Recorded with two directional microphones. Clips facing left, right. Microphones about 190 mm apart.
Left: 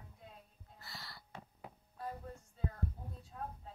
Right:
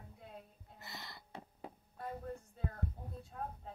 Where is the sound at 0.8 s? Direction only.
20° right (ahead or behind).